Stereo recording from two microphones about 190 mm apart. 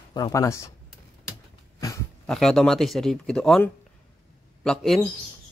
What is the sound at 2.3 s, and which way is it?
A man's voice, centre (ahead or behind).